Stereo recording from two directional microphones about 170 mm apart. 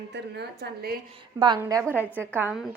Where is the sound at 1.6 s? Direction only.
15° right (ahead or behind).